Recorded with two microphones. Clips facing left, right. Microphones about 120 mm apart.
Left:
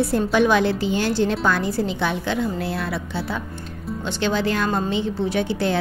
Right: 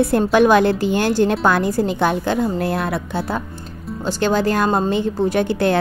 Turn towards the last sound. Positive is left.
turn(degrees=-50)  # may be behind; listen again after turning